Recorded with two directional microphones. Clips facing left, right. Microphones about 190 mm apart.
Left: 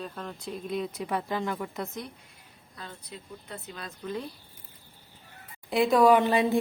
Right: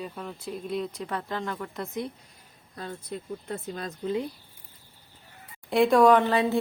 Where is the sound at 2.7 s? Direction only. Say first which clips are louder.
Right 8 dB; 45° right (ahead or behind).